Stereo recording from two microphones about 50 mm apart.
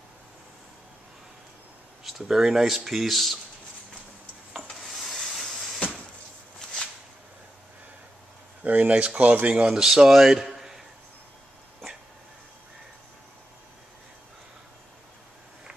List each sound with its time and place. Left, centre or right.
2.0 s speech: centre
4.8 s vehicle: centre
8.6 s speech: right
9.8 s speech: centre